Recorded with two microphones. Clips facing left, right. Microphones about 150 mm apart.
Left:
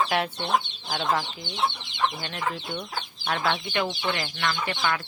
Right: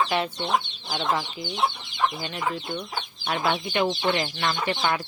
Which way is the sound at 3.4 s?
25° right (ahead or behind).